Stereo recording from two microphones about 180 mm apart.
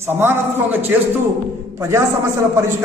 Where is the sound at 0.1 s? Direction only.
10° right (ahead or behind).